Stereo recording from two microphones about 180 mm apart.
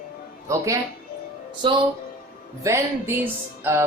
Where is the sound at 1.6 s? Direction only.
30° right (ahead or behind).